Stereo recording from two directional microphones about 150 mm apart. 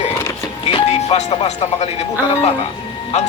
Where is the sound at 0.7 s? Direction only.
45° left (ahead or behind).